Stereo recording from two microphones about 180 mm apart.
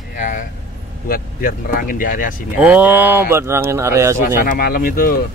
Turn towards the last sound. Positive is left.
turn(degrees=55)  # may be behind; listen again after turning